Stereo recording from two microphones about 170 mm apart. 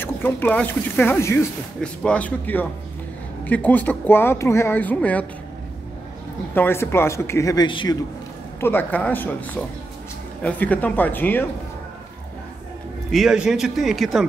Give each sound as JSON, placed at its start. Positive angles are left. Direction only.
{"t": 0.0, "sound": "speech", "side_deg": 10}
{"t": 6.5, "sound": "speech", "side_deg": 10}
{"t": 8.5, "sound": "speech", "side_deg": 15}
{"t": 10.4, "sound": "speech", "side_deg": 10}
{"t": 13.1, "sound": "speech", "side_deg": -5}